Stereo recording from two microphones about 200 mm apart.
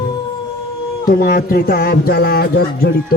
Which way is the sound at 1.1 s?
45° left (ahead or behind).